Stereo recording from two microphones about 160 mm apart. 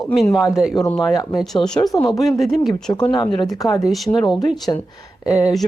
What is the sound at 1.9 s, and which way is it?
Speech, 20° left (ahead or behind).